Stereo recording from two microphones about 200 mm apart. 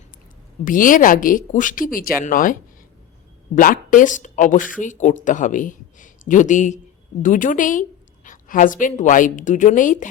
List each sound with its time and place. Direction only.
0.6 s a woman's voice: 40° left (ahead or behind)